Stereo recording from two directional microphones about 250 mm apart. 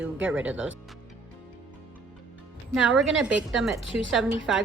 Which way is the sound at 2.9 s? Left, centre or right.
Centre.